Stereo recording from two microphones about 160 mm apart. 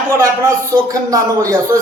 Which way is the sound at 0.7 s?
20° right (ahead or behind).